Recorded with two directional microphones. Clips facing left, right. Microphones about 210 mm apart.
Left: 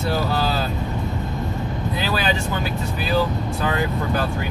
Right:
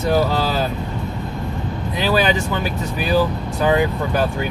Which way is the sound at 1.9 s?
15° right (ahead or behind).